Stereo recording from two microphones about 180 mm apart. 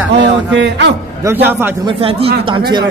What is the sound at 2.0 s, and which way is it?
Speech, 30° right (ahead or behind).